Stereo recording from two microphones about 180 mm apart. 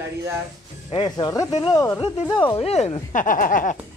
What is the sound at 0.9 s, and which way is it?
Speech, 25° left (ahead or behind).